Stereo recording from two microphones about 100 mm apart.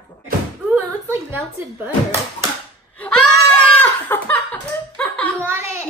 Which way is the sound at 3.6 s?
15° left (ahead or behind).